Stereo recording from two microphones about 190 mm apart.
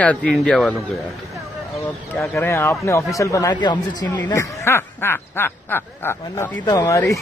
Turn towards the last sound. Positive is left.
turn(degrees=15)  # may be behind; listen again after turning